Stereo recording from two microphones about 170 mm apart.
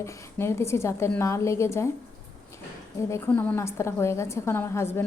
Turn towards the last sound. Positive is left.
turn(degrees=15)  # may be behind; listen again after turning